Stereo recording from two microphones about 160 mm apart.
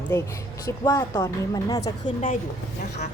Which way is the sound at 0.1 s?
20° left (ahead or behind).